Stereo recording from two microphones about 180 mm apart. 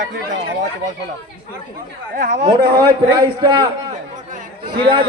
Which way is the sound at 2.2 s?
40° right (ahead or behind).